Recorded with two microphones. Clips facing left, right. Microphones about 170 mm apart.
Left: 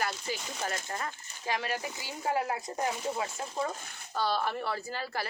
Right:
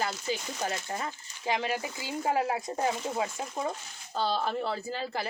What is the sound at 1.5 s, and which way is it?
Speech, 20° right (ahead or behind).